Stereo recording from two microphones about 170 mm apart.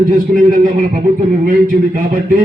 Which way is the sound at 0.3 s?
50° right (ahead or behind).